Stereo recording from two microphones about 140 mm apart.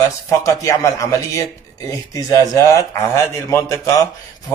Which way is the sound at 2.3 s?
25° left (ahead or behind).